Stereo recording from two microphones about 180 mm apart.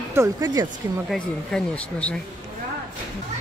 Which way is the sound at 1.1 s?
5° left (ahead or behind).